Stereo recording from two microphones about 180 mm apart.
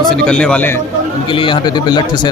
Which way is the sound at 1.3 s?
30° left (ahead or behind).